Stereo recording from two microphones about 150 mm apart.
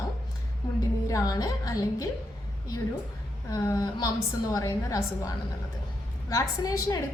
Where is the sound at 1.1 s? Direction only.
25° left (ahead or behind).